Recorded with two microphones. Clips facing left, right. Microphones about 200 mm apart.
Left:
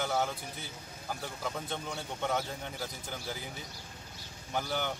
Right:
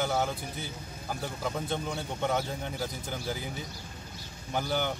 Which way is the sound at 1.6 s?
10° right (ahead or behind).